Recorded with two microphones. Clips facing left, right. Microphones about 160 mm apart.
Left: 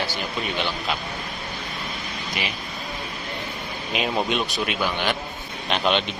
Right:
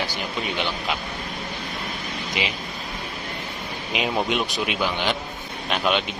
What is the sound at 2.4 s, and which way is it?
Speech, 20° right (ahead or behind).